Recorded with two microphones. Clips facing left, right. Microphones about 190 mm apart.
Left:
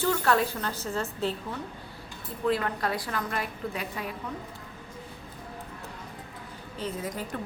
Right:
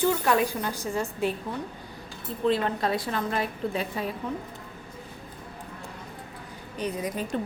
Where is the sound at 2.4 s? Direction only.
25° right (ahead or behind).